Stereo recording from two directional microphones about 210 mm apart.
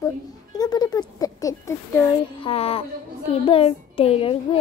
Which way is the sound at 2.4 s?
25° left (ahead or behind).